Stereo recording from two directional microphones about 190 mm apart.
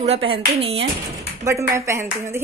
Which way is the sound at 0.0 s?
30° right (ahead or behind).